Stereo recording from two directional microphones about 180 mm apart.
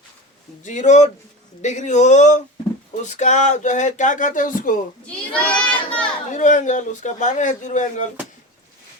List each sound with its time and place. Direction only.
0.6 s speech: 40° left (ahead or behind)
5.0 s crowd: 5° left (ahead or behind)
6.3 s speech: 45° left (ahead or behind)